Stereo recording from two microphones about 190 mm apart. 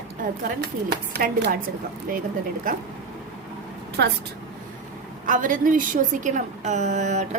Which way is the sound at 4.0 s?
60° right (ahead or behind).